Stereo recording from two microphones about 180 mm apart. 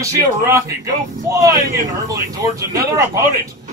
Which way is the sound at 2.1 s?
20° right (ahead or behind).